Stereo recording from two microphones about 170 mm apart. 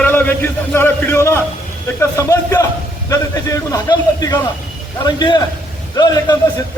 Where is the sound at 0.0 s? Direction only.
10° left (ahead or behind).